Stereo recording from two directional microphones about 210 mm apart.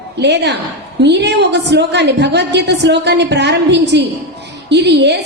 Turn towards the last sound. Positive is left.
turn(degrees=-55)  # may be behind; listen again after turning